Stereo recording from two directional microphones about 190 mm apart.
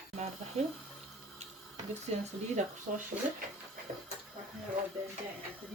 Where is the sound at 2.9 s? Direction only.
40° right (ahead or behind).